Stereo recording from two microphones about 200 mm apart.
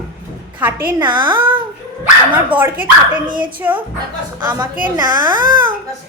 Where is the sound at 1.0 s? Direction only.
25° right (ahead or behind).